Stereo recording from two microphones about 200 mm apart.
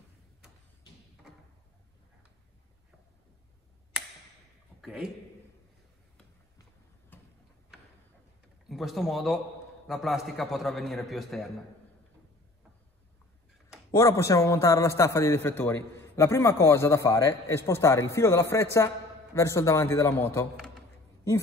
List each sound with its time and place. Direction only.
4.8 s a man's voice: 5° right (ahead or behind)
7.1 s tick-tock: 10° left (ahead or behind)
8.6 s a man's voice: centre (ahead or behind)
13.9 s a man's voice: 15° left (ahead or behind)